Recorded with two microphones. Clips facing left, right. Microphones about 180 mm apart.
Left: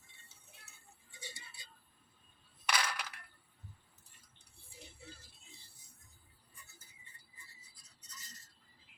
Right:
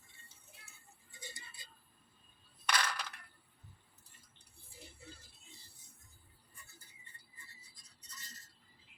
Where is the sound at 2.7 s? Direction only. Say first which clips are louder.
Even; 10° left (ahead or behind).